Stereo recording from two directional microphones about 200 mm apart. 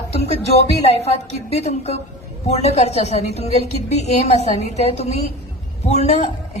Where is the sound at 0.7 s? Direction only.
30° left (ahead or behind).